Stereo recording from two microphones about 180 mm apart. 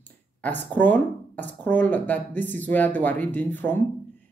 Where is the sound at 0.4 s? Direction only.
10° left (ahead or behind).